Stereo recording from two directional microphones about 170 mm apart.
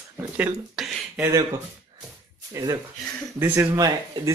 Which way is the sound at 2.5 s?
20° right (ahead or behind).